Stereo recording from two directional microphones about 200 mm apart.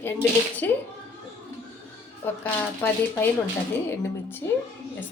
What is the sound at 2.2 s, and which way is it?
Speech, 10° left (ahead or behind).